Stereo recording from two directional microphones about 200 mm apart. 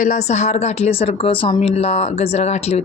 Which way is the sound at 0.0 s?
35° left (ahead or behind).